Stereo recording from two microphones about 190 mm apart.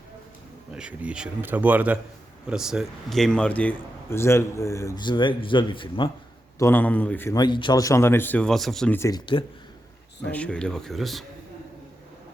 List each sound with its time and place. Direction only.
0.7 s a man's voice: 5° right (ahead or behind); by 6.1 s 25° left (ahead or behind)
6.6 s speech: 10° left (ahead or behind)
9.0 s speech: 20° left (ahead or behind)
10.2 s speech: 5° left (ahead or behind)